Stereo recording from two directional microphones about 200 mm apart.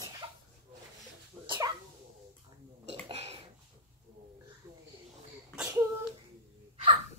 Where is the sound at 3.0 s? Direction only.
30° right (ahead or behind).